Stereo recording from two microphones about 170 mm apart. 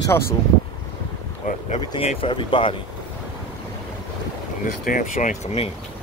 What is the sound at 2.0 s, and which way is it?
Speech, 35° left (ahead or behind).